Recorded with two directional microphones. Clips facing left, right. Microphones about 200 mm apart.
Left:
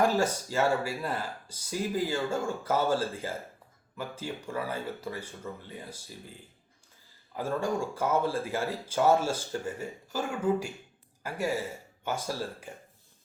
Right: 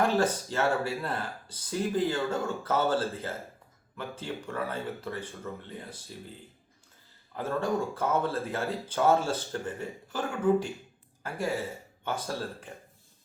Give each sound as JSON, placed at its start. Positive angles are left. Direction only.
{"t": 0.0, "sound": "speech", "side_deg": 10}
{"t": 7.3, "sound": "speech", "side_deg": 10}